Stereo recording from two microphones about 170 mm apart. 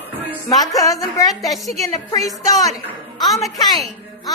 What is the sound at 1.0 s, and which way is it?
Speech, 20° left (ahead or behind).